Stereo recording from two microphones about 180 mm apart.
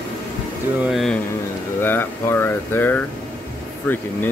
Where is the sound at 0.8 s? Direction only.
Centre (ahead or behind).